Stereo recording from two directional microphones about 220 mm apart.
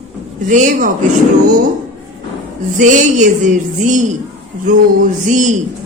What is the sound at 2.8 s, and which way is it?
Speech, 35° right (ahead or behind).